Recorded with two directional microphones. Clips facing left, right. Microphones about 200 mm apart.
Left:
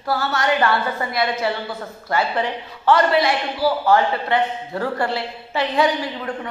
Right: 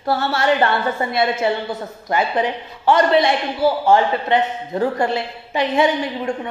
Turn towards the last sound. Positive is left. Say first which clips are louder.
# right 4 dB
turn(degrees=-20)  # may be behind; listen again after turning